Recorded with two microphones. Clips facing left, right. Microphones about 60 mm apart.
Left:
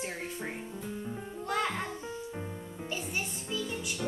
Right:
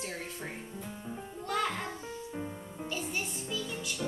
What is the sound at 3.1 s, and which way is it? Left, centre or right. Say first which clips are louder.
Music: left 1 dB; centre.